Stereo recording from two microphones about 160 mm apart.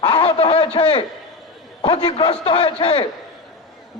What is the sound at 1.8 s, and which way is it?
A man's voice, 30° left (ahead or behind).